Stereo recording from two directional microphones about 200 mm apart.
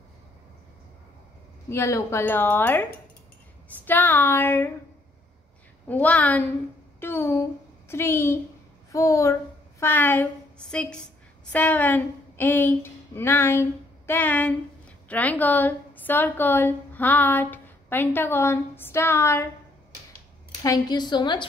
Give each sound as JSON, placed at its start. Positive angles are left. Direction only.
{"t": 1.7, "sound": "a woman's voice", "side_deg": 15}
{"t": 5.9, "sound": "a woman's voice", "side_deg": 10}
{"t": 20.6, "sound": "a woman's voice", "side_deg": 20}